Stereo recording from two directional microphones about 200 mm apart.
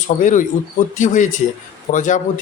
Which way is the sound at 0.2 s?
40° left (ahead or behind).